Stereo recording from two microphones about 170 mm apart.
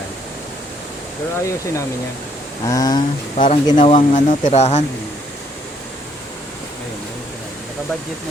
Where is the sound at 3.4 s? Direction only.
35° left (ahead or behind).